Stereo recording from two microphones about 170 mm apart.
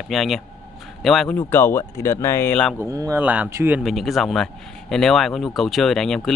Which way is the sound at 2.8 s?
20° right (ahead or behind).